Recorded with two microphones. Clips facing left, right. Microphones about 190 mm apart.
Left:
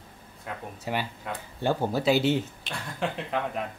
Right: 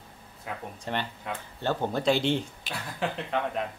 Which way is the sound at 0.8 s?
10° left (ahead or behind).